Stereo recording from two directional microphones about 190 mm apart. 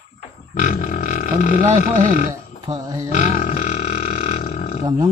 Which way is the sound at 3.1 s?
45° left (ahead or behind).